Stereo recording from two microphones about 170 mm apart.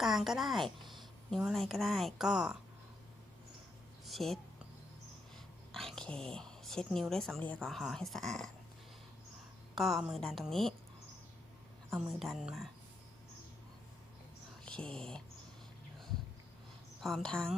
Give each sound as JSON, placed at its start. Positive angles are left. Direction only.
{"t": 0.0, "sound": "a woman's voice", "side_deg": 0}
{"t": 4.0, "sound": "a sound", "side_deg": 0}
{"t": 5.7, "sound": "a woman's voice", "side_deg": 0}
{"t": 9.7, "sound": "a woman's voice", "side_deg": 0}
{"t": 11.9, "sound": "a woman's voice", "side_deg": 0}
{"t": 14.6, "sound": "speech", "side_deg": 5}
{"t": 17.0, "sound": "a woman's voice", "side_deg": 0}